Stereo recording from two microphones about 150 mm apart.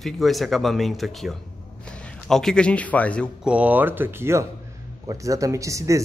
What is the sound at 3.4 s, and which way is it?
Speech, 10° right (ahead or behind).